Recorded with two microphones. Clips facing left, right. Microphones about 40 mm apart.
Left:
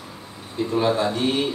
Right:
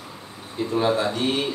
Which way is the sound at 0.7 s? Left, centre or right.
Centre.